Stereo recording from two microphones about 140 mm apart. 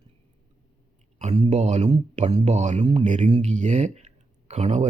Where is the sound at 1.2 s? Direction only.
45° right (ahead or behind).